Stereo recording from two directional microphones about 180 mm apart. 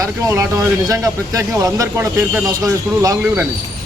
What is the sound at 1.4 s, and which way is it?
Speech, 20° right (ahead or behind).